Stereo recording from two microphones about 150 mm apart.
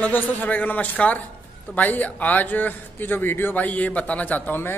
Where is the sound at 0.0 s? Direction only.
10° left (ahead or behind).